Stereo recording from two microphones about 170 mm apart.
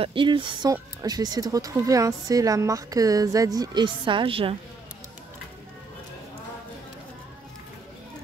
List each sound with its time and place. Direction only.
0.0 s speech: 30° right (ahead or behind)